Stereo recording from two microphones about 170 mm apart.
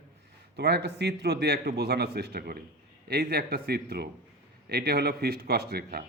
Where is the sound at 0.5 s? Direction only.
80° right.